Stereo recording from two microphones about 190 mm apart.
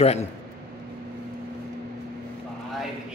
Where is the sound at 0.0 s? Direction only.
35° left (ahead or behind).